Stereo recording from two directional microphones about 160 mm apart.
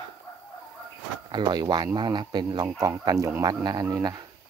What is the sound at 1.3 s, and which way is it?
Speech, 25° right (ahead or behind).